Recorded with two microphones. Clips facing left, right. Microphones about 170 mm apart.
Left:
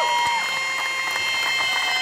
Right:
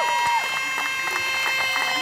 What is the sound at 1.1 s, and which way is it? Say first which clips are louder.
Run: even; 60° right (ahead or behind).